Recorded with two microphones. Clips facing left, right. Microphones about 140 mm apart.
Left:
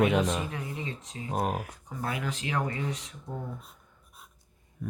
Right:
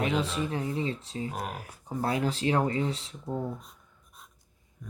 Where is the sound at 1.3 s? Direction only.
45° left (ahead or behind).